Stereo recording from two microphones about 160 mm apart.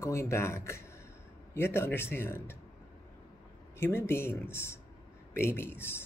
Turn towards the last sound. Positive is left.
turn(degrees=15)  # may be behind; listen again after turning